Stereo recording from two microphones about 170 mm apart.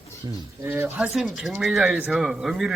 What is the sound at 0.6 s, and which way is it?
A man's voice, 15° right (ahead or behind).